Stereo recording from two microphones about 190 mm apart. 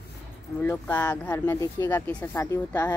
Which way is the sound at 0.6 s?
10° left (ahead or behind).